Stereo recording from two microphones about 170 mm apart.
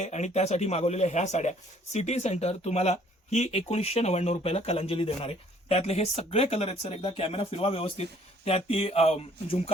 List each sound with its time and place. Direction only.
0.0 s a man's voice: 40° left (ahead or behind)